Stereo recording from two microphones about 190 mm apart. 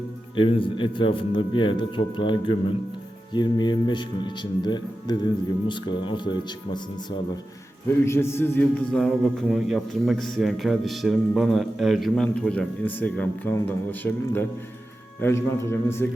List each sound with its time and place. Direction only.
0.3 s a man's voice: 25° left (ahead or behind)
8.0 s a man's voice: 15° left (ahead or behind)